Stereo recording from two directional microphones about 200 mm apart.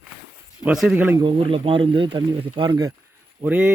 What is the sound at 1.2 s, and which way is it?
Speech, 25° right (ahead or behind).